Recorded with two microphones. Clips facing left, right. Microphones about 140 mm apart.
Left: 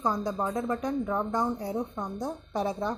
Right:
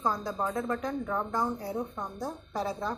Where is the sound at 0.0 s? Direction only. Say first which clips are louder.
Left 2 dB; 15° left (ahead or behind).